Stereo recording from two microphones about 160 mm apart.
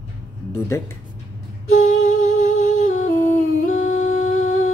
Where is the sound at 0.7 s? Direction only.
15° left (ahead or behind).